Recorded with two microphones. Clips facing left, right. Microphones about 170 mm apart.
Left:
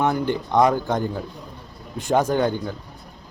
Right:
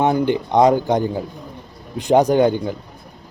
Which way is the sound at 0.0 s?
20° right (ahead or behind).